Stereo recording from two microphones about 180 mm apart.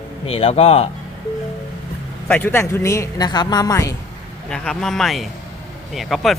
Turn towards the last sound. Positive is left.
turn(degrees=0)  # may be behind; listen again after turning